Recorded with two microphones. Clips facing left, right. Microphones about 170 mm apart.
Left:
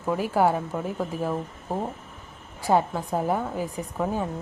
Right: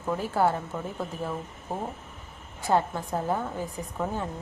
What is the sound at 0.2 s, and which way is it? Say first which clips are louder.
A woman's voice: left 3 dB; 10° left (ahead or behind).